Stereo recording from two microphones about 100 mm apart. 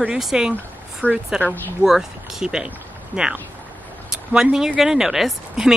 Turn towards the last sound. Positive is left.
turn(degrees=-5)  # may be behind; listen again after turning